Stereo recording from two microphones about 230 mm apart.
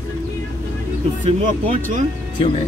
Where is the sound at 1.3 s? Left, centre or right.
Right.